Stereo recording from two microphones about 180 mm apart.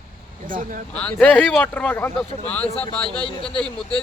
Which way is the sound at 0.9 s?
5° left (ahead or behind).